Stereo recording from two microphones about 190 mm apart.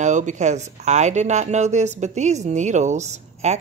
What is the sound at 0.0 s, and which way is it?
Speech, 40° right (ahead or behind).